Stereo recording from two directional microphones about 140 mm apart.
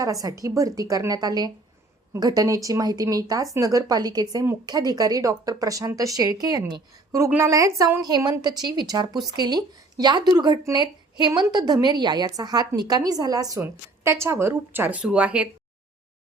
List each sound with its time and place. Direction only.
0.0 s speech: 25° right (ahead or behind)
7.2 s a woman's voice: 15° right (ahead or behind)